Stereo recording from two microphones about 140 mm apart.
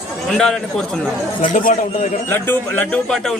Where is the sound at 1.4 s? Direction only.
75° left (ahead or behind).